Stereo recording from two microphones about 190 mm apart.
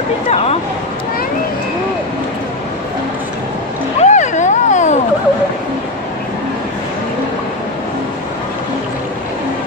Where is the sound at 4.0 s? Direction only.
40° left (ahead or behind).